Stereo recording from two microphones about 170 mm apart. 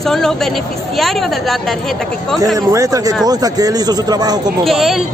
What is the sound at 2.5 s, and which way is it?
A man's voice, 20° right (ahead or behind).